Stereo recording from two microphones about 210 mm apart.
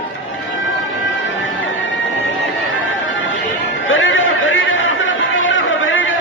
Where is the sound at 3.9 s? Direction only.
65° left (ahead or behind).